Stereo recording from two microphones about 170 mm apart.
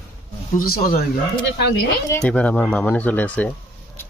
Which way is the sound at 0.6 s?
60° left (ahead or behind).